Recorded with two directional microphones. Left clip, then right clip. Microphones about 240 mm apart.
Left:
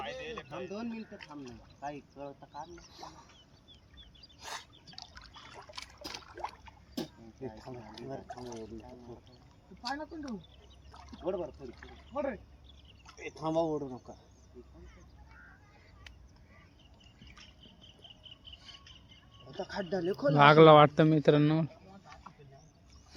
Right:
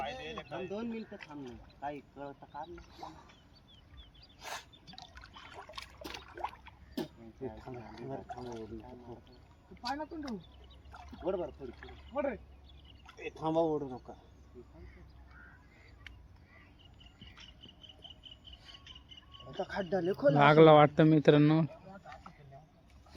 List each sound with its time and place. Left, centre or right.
0.0 s a sound: right
0.7 s speech: centre
4.4 s a sound: centre
4.9 s liquid: centre
5.7 s trickle: centre
6.3 s a sound: centre
8.0 s speech: centre
11.2 s speech: centre
19.5 s speech: centre
20.3 s speech: centre